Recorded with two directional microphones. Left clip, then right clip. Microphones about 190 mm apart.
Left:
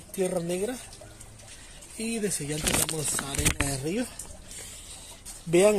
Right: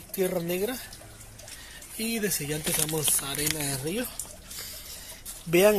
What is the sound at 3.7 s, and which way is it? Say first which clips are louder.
Speech: left 1 dB; 25° left (ahead or behind).